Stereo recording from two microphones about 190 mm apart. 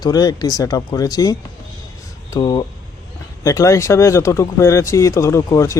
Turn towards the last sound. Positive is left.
turn(degrees=15)  # may be behind; listen again after turning